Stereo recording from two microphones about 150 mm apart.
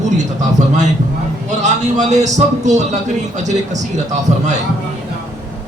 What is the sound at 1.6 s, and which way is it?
Speech, 50° right (ahead or behind).